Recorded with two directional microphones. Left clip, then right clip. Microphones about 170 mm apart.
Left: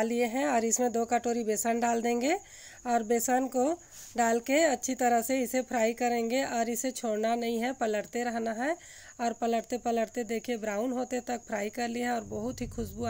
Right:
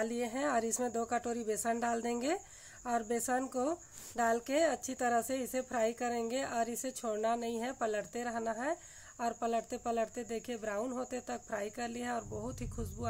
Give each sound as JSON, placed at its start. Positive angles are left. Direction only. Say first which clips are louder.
{"t": 0.0, "sound": "a woman's voice", "louder": "left 6 dB", "side_deg": 30}